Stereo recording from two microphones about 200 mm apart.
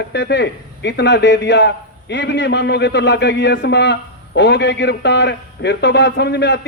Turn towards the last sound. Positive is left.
turn(degrees=60)  # may be behind; listen again after turning